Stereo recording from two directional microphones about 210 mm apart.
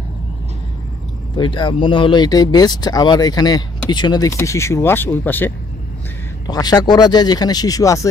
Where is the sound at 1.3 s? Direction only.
20° left (ahead or behind).